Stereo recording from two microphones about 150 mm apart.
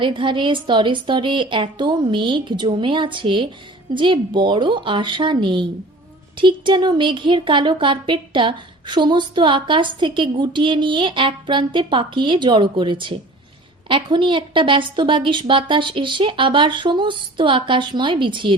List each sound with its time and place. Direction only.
0.0 s a woman's voice: 35° right (ahead or behind)